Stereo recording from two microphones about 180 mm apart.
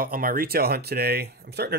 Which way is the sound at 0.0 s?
50° right (ahead or behind).